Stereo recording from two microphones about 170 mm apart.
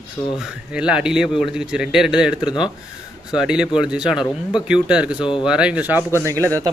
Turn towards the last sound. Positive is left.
turn(degrees=-15)  # may be behind; listen again after turning